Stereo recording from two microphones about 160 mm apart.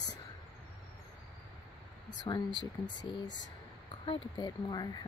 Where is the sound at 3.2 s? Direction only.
90° left.